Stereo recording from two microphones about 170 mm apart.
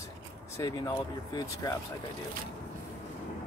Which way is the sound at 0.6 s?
20° left (ahead or behind).